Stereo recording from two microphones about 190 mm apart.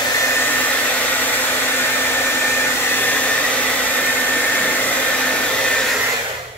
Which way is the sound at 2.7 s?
10° left (ahead or behind).